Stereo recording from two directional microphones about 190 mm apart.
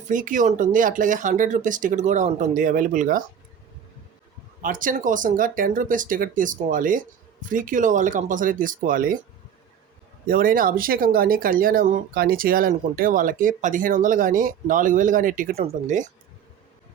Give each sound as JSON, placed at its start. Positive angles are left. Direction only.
{"t": 0.1, "sound": "speech", "side_deg": -45}
{"t": 4.6, "sound": "speech", "side_deg": -45}
{"t": 10.2, "sound": "speech", "side_deg": -50}